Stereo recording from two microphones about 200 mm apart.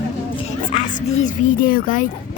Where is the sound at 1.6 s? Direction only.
45° left (ahead or behind).